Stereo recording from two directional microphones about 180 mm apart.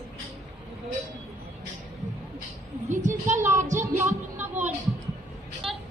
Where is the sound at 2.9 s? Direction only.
40° right (ahead or behind).